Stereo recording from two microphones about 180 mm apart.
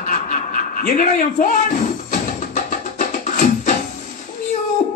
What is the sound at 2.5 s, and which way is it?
Music, 40° left (ahead or behind).